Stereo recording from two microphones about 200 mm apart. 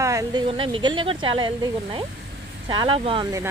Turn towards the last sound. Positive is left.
turn(degrees=-20)  # may be behind; listen again after turning